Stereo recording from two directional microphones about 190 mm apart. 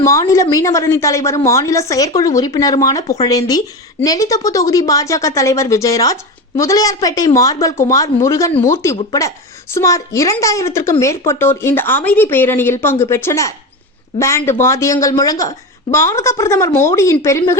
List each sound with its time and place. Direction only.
0.0 s a woman's voice: 15° left (ahead or behind)